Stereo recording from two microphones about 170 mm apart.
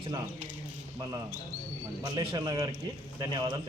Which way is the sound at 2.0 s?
30° right (ahead or behind).